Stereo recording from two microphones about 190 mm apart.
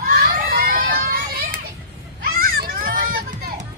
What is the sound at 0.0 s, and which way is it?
Children playing, 50° right (ahead or behind).